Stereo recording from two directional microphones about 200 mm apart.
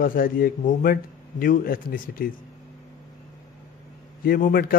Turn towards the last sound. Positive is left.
turn(degrees=45)  # may be behind; listen again after turning